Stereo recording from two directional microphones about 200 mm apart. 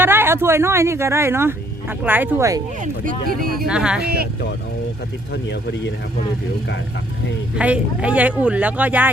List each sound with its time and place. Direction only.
0.0 s speech: 10° right (ahead or behind)
2.8 s speech: 40° right (ahead or behind)
3.7 s speech: 5° right (ahead or behind)
4.0 s speech: 50° right (ahead or behind)
5.3 s speech: 60° left (ahead or behind)
7.6 s speech: 5° right (ahead or behind)